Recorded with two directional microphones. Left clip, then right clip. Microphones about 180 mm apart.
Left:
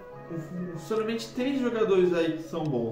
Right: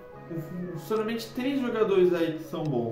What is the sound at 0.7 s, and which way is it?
A man's voice, 20° right (ahead or behind).